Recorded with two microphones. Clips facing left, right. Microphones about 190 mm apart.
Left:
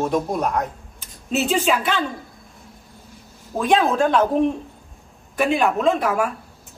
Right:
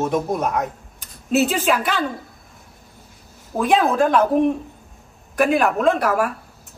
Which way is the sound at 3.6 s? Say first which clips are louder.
Right 1 dB; 5° right (ahead or behind).